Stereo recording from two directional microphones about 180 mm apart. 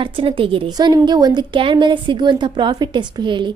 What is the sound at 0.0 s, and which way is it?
Speech, 30° right (ahead or behind).